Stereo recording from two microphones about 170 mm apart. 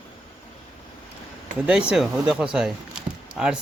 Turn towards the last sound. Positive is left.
turn(degrees=-5)  # may be behind; listen again after turning